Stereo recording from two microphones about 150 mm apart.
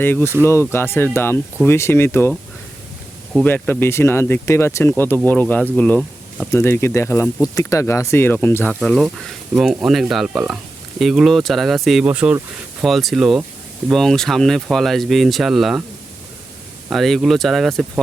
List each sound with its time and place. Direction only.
0.0 s speech: 15° left (ahead or behind)
3.4 s speech: 10° left (ahead or behind)
6.5 s speech: 15° left (ahead or behind); by 15.8 s centre (ahead or behind)
16.9 s speech: centre (ahead or behind)